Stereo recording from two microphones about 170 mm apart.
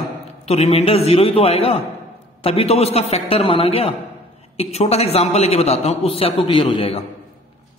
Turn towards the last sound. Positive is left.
turn(degrees=35)  # may be behind; listen again after turning